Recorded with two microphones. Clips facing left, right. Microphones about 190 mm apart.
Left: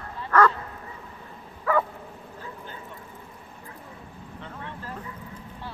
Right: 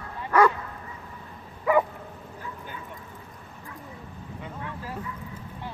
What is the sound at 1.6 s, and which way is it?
Bow-wow, 15° right (ahead or behind).